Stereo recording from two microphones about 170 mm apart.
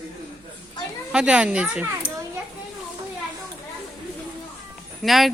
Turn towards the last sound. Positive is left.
turn(degrees=0)  # may be behind; listen again after turning